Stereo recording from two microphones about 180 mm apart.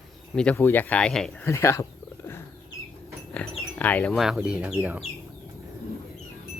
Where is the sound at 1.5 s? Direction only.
15° left (ahead or behind).